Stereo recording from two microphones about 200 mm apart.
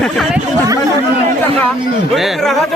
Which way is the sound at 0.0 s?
Centre (ahead or behind).